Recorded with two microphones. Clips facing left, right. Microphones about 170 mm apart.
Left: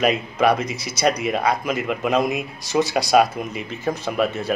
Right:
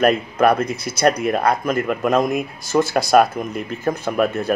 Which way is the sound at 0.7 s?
55° right (ahead or behind).